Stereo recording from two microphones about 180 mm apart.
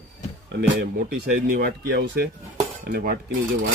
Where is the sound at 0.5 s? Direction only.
80° right.